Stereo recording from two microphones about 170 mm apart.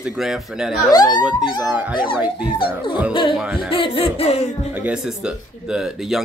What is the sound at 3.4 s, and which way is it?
Speech, 5° right (ahead or behind).